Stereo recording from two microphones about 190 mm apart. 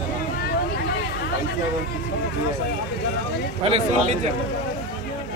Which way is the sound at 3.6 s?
35° right (ahead or behind).